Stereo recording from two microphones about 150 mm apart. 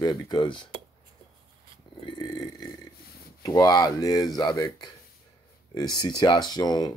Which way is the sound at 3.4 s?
25° left (ahead or behind).